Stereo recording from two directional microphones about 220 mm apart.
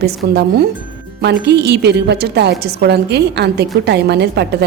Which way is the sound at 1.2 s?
50° right (ahead or behind).